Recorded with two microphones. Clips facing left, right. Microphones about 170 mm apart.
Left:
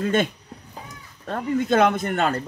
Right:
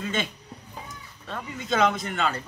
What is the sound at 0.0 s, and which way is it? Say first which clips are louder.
Speech: left 8 dB; 55° left (ahead or behind).